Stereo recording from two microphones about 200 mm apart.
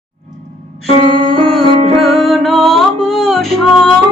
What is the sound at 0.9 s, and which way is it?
Music, 25° right (ahead or behind).